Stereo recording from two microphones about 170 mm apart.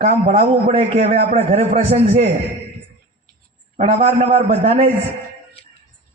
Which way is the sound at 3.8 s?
40° right (ahead or behind).